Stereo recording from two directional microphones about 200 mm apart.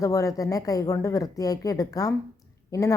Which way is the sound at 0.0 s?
15° left (ahead or behind).